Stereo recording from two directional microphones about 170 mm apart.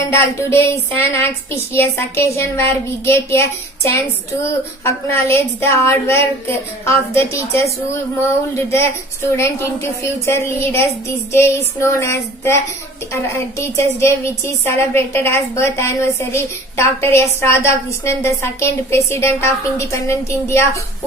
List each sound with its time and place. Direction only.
0.1 s a woman's voice: 15° left (ahead or behind)
9.3 s a woman's voice: 15° left (ahead or behind)